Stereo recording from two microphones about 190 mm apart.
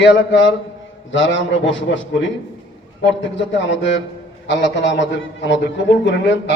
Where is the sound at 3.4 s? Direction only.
70° left (ahead or behind).